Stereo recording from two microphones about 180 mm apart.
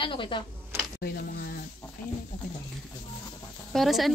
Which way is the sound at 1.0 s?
60° left (ahead or behind).